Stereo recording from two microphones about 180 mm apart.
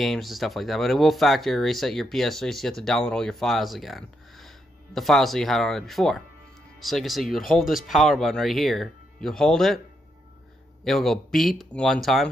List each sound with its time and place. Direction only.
0.0 s speech: centre (ahead or behind)
10.8 s speech: centre (ahead or behind)